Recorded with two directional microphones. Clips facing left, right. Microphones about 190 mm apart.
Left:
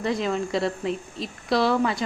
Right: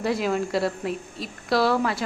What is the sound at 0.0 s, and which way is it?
Speech, 5° right (ahead or behind).